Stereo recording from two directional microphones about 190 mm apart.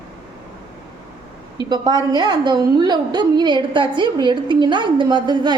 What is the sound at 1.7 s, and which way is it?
A woman's voice, 20° right (ahead or behind).